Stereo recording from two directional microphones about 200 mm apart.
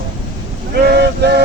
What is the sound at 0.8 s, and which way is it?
Vehicle, 55° right (ahead or behind).